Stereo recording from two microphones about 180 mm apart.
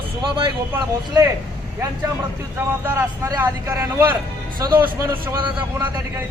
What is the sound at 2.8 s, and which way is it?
A man's voice, 15° right (ahead or behind).